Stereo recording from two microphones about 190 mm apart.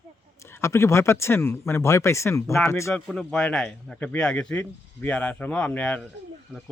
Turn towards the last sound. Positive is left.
turn(degrees=5)  # may be behind; listen again after turning